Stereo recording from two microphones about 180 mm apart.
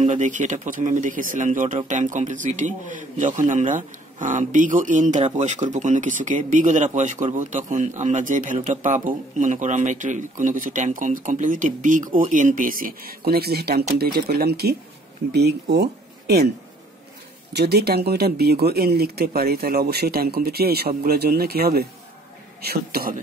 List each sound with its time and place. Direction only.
0.0 s speech: 45° right (ahead or behind); by 16.4 s 60° right (ahead or behind)
17.5 s speech: 65° right (ahead or behind)